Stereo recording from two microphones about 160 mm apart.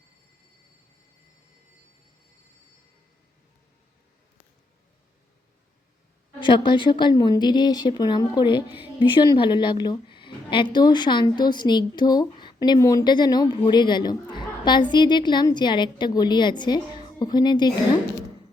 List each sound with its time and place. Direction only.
6.4 s a woman's voice: 30° left (ahead or behind)